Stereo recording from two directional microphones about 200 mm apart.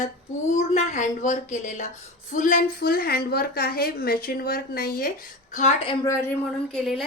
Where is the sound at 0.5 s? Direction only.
35° left (ahead or behind).